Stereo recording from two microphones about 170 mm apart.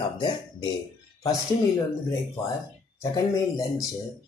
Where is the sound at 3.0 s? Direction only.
20° left (ahead or behind).